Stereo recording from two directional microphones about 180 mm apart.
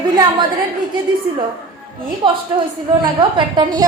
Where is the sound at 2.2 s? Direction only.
25° right (ahead or behind).